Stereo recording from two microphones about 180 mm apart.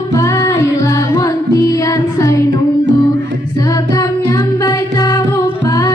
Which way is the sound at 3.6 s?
20° left (ahead or behind).